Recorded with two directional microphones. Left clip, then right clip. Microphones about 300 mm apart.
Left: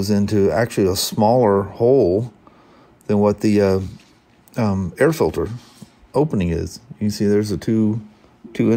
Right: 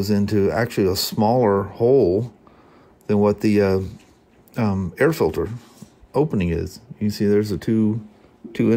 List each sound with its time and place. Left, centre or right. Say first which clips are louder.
0.0 s speech: left 2 dB; centre